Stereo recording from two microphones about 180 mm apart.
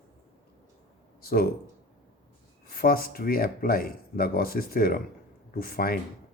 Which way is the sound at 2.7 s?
55° left (ahead or behind).